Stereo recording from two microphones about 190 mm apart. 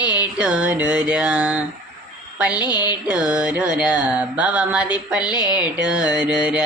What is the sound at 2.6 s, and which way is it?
Music, 20° left (ahead or behind).